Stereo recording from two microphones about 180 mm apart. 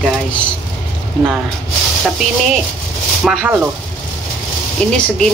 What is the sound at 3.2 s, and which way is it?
Speech, 5° right (ahead or behind).